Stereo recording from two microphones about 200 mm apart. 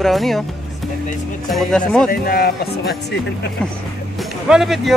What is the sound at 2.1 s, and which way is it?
Speech, 50° left (ahead or behind).